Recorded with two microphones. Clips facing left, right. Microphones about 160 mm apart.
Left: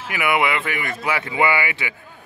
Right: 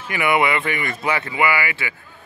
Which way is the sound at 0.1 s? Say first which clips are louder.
Right 2 dB; 5° left (ahead or behind).